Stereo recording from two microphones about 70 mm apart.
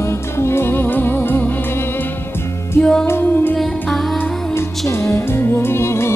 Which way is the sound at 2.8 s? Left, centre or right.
Centre.